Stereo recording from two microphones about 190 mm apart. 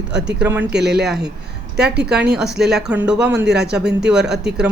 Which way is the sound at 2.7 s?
5° right (ahead or behind).